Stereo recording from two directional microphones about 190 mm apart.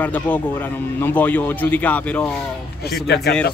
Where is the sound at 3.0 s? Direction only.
60° left (ahead or behind).